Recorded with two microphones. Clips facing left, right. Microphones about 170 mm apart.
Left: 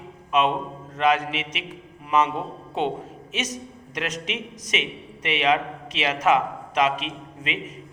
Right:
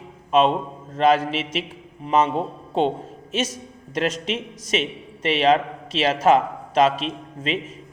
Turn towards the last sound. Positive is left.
turn(degrees=-30)  # may be behind; listen again after turning